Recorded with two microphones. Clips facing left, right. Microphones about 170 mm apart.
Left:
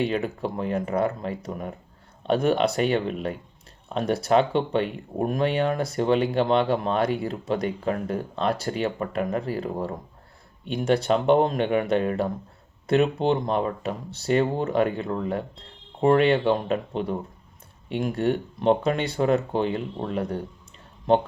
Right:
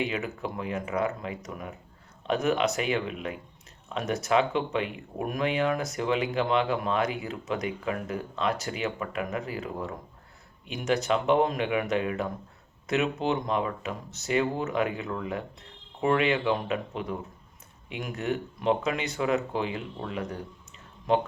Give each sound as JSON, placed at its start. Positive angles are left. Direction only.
{"t": 0.0, "sound": "speech", "side_deg": 35}